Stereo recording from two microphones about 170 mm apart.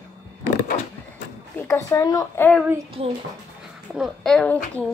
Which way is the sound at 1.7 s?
20° left (ahead or behind).